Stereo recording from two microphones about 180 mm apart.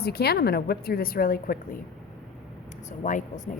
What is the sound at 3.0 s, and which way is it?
Speech, 45° left (ahead or behind).